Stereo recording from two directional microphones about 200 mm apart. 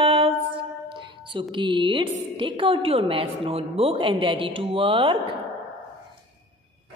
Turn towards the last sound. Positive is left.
turn(degrees=-25)  # may be behind; listen again after turning